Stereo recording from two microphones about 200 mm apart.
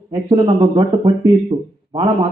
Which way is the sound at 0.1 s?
25° right (ahead or behind).